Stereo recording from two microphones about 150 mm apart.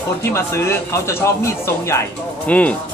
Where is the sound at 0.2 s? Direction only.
15° left (ahead or behind).